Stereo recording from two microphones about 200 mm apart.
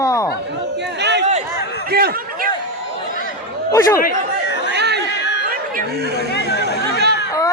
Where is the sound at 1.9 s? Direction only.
50° right (ahead or behind).